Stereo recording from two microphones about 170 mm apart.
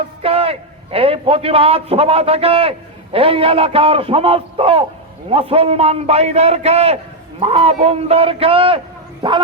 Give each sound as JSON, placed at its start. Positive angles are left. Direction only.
{"t": 0.2, "sound": "a man's voice", "side_deg": -35}